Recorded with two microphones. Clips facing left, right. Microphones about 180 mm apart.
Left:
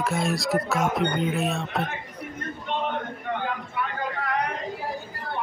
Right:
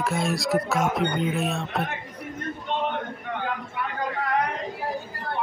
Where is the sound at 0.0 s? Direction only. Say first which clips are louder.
Even; centre (ahead or behind).